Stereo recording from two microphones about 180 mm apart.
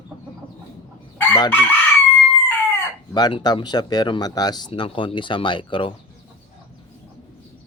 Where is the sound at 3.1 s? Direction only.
25° left (ahead or behind).